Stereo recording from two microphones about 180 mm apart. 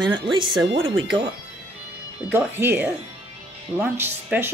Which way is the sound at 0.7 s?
90° right.